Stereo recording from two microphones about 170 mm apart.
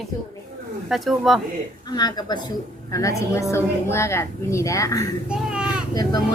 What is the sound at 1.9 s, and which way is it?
A woman's voice, 25° left (ahead or behind).